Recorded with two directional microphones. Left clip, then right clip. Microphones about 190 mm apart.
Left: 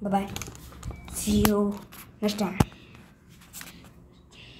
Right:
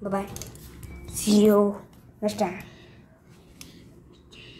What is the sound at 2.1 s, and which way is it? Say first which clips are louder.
Speech: right 3 dB; centre (ahead or behind).